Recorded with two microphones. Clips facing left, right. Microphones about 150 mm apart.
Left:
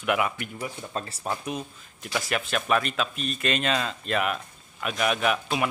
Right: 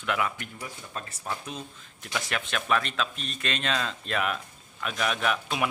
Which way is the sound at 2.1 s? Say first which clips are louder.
Left 4 dB; 5° left (ahead or behind).